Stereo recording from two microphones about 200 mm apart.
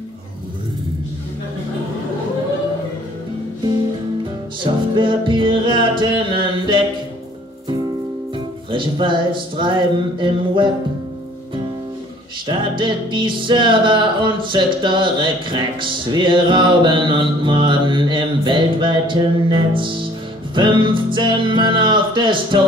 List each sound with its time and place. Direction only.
4.6 s music: 25° right (ahead or behind)
8.7 s music: 25° right (ahead or behind)
12.4 s music: 25° right (ahead or behind)